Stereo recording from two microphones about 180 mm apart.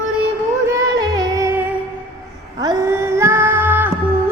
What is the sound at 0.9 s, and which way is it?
Music, 20° right (ahead or behind).